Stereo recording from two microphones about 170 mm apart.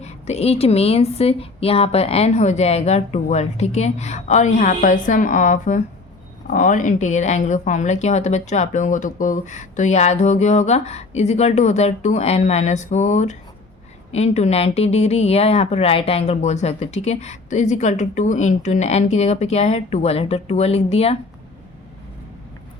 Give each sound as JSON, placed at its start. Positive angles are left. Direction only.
{"t": 0.0, "sound": "speech", "side_deg": 40}